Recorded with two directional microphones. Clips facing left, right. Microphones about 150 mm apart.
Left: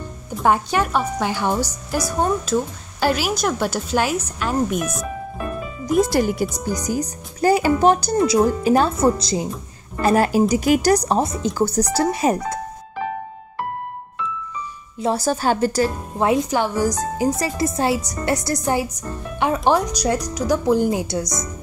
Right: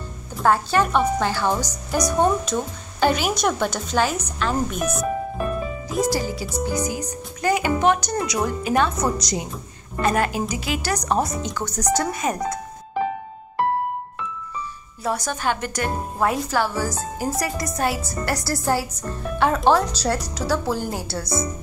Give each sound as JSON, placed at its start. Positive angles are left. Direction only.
{"t": 0.4, "sound": "a woman's voice", "side_deg": 15}
{"t": 5.9, "sound": "speech", "side_deg": 55}
{"t": 6.7, "sound": "speech", "side_deg": 35}
{"t": 15.0, "sound": "speech", "side_deg": 30}
{"t": 17.4, "sound": "a woman's voice", "side_deg": 25}